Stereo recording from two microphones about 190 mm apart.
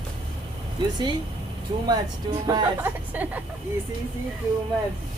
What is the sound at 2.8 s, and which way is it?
Speech, 10° right (ahead or behind).